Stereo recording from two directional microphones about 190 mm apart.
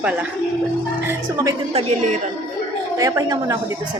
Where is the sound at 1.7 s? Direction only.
35° right (ahead or behind).